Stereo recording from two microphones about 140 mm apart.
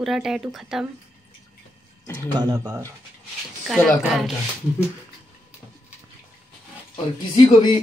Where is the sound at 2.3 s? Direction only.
25° right (ahead or behind).